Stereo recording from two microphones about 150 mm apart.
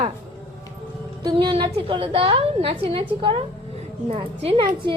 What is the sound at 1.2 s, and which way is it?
A woman's voice, 35° right (ahead or behind).